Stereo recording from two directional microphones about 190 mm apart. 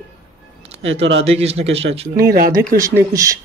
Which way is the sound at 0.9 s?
80° right.